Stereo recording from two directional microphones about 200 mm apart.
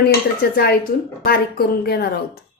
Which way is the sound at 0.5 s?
50° left (ahead or behind).